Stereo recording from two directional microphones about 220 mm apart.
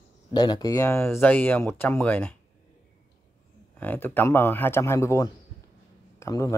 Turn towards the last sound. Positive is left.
turn(degrees=15)  # may be behind; listen again after turning